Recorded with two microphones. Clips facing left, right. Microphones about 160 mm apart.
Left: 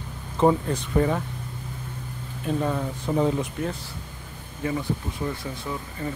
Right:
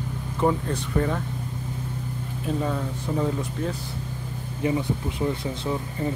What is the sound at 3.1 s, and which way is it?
Speech, 25° left (ahead or behind).